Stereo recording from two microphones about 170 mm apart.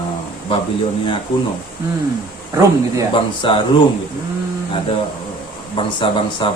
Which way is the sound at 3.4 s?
30° left (ahead or behind).